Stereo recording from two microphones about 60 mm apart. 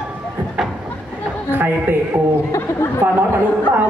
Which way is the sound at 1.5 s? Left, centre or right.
Right.